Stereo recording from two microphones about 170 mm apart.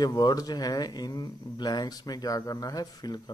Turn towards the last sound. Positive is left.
turn(degrees=25)  # may be behind; listen again after turning